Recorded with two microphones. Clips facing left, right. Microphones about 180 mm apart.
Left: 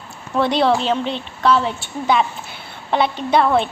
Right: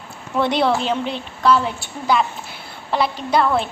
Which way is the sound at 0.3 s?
15° right (ahead or behind).